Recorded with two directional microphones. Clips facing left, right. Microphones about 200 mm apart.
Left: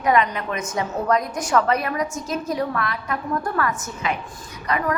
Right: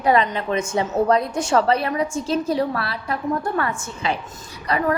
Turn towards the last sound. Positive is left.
turn(degrees=-35)  # may be behind; listen again after turning